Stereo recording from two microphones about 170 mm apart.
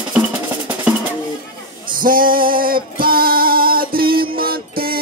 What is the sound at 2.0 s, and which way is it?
Music, 55° right (ahead or behind).